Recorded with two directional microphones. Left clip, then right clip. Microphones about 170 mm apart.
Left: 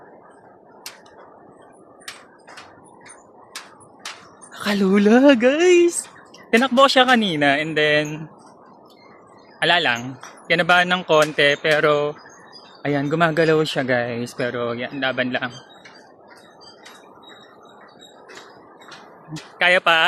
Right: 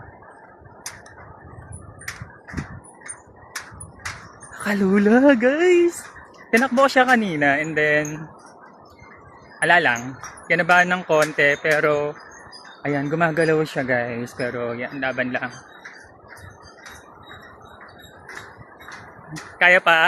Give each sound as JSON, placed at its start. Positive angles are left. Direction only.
{"t": 4.9, "sound": "speech", "side_deg": 15}
{"t": 9.6, "sound": "speech", "side_deg": 15}
{"t": 13.3, "sound": "speech", "side_deg": 10}
{"t": 19.5, "sound": "speech", "side_deg": 20}